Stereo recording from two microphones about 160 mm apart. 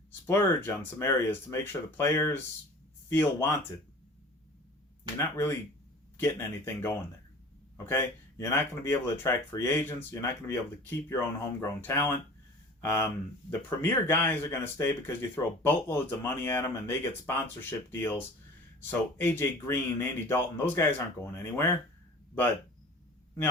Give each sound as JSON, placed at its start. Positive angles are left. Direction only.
{"t": 0.3, "sound": "speech", "side_deg": 15}
{"t": 5.1, "sound": "speech", "side_deg": 15}
{"t": 13.5, "sound": "speech", "side_deg": 15}